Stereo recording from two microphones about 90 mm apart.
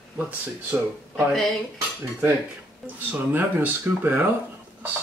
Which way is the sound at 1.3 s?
Centre (ahead or behind).